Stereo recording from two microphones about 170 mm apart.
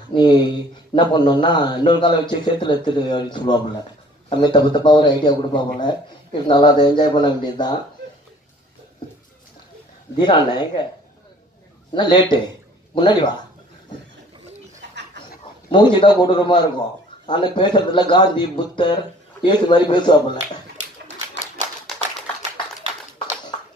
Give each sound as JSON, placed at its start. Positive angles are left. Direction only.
{"t": 0.1, "sound": "a man's voice", "side_deg": 25}
{"t": 10.1, "sound": "a man's voice", "side_deg": 25}
{"t": 11.9, "sound": "a man's voice", "side_deg": 25}
{"t": 15.7, "sound": "a man's voice", "side_deg": 25}
{"t": 21.4, "sound": "typewriter", "side_deg": 45}